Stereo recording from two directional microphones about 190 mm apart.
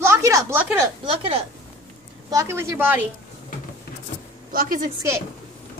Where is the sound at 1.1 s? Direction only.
30° right (ahead or behind).